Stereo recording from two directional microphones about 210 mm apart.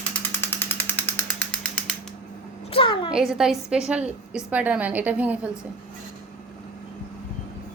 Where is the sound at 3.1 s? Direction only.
5° right (ahead or behind).